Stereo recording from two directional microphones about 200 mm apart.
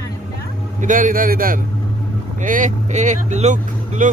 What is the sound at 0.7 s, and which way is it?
A man's voice, 40° right (ahead or behind).